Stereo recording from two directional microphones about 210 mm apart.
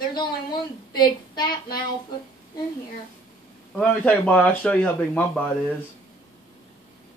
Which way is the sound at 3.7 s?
5° left (ahead or behind).